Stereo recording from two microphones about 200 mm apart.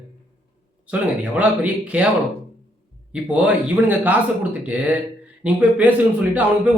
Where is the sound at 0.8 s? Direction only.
5° right (ahead or behind).